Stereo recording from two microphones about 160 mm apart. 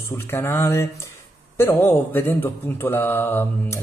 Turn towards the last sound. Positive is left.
turn(degrees=15)  # may be behind; listen again after turning